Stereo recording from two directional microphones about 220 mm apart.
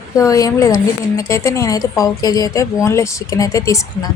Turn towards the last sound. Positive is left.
turn(degrees=15)  # may be behind; listen again after turning